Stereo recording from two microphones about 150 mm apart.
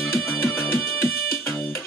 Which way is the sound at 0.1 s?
15° left (ahead or behind).